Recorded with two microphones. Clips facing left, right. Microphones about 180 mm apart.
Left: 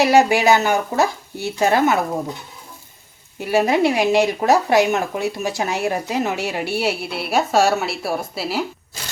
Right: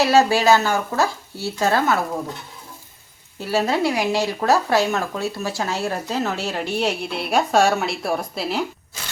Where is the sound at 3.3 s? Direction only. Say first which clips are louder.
Left 3 dB; 15° left (ahead or behind).